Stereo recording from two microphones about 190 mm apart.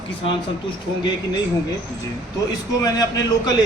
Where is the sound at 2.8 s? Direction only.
20° left (ahead or behind).